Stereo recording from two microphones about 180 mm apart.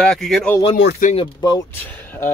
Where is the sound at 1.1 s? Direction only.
25° left (ahead or behind).